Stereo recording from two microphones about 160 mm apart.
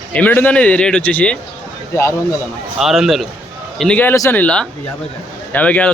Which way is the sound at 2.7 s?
Centre (ahead or behind).